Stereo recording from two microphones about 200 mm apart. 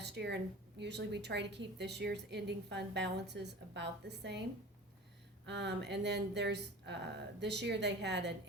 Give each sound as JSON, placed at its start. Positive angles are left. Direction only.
{"t": 0.0, "sound": "a sound", "side_deg": -55}
{"t": 0.8, "sound": "a woman's voice", "side_deg": -60}
{"t": 5.5, "sound": "a woman's voice", "side_deg": -60}